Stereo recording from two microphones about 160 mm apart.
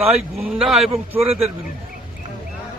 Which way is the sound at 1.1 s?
40° right (ahead or behind).